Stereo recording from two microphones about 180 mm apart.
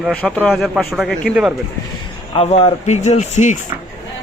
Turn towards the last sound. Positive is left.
turn(degrees=40)  # may be behind; listen again after turning